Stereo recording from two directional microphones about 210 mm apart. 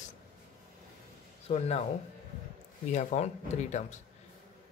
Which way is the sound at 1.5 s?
30° left (ahead or behind).